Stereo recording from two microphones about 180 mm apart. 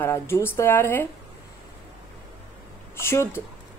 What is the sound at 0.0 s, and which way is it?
Speech, 15° left (ahead or behind).